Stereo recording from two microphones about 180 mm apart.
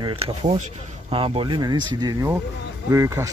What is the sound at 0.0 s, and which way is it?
Speech, 30° right (ahead or behind).